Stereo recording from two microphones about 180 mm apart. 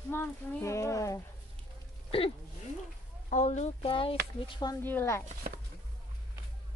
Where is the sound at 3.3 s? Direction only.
40° left (ahead or behind).